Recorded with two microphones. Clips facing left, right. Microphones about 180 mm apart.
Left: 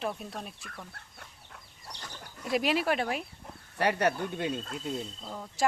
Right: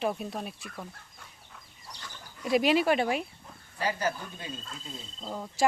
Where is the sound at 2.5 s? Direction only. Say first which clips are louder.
Right 4 dB; centre (ahead or behind).